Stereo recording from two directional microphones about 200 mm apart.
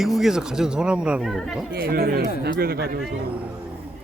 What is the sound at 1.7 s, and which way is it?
Speech, 50° right (ahead or behind).